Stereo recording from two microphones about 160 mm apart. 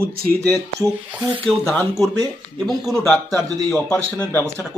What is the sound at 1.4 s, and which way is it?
Speech, 10° left (ahead or behind).